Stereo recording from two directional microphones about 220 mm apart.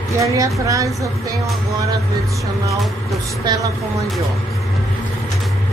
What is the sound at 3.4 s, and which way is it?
Speech, 15° right (ahead or behind).